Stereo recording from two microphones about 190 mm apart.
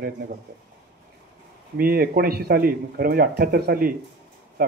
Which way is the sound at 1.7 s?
50° right (ahead or behind).